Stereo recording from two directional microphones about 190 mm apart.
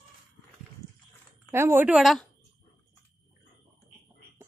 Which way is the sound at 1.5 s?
10° right (ahead or behind).